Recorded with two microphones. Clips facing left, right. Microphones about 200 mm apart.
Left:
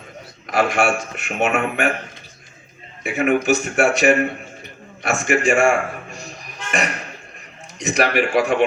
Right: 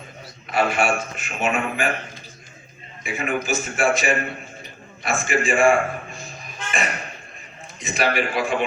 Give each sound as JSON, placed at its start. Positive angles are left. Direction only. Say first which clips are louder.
{"t": 0.5, "sound": "a man's voice", "louder": "left 2 dB", "side_deg": 80}
{"t": 3.0, "sound": "a man's voice", "louder": "left 7 dB", "side_deg": 70}